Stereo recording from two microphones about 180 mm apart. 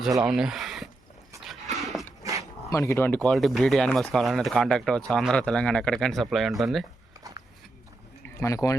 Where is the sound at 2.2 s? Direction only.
20° right (ahead or behind).